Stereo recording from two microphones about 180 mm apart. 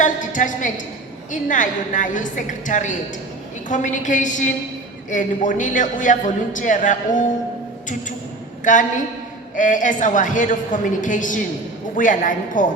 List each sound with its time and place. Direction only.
0.0 s a sound: 45° left (ahead or behind)
1.3 s a man's voice: 45° left (ahead or behind)
8.6 s a man's voice: 45° left (ahead or behind)